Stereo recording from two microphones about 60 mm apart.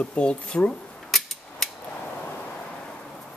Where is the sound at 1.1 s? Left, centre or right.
Centre.